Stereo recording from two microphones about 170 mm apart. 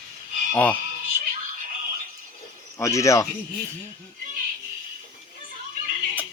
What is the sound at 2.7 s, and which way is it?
Speech, 20° left (ahead or behind).